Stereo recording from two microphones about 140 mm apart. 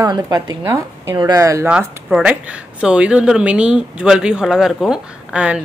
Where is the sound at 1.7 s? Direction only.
5° right (ahead or behind).